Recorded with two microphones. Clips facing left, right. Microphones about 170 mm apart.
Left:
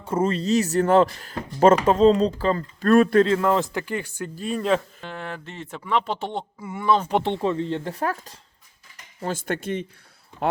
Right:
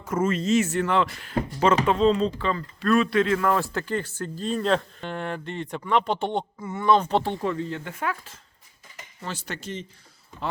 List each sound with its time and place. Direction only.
0.0 s speech: 30° left (ahead or behind)
3.2 s speech: 25° left (ahead or behind); by 7.2 s 5° left (ahead or behind)
7.2 s speech: 25° left (ahead or behind); by 9.8 s 55° left (ahead or behind)